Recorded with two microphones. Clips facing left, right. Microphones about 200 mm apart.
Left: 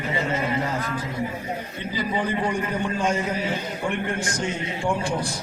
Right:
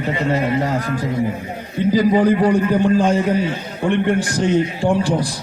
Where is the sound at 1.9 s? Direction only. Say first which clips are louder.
Right 12 dB; 40° right (ahead or behind).